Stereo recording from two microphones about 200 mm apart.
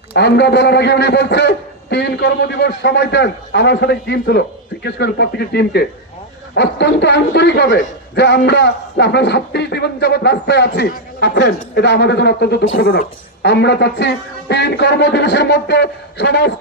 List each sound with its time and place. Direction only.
0.1 s a man's voice: 55° left (ahead or behind)